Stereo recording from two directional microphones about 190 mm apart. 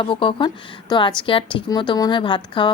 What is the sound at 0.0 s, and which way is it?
A woman's voice, 25° left (ahead or behind).